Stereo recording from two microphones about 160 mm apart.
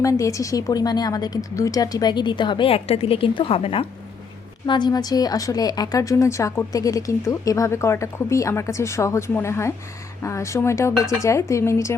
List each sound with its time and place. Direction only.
0.0 s speech: 20° left (ahead or behind)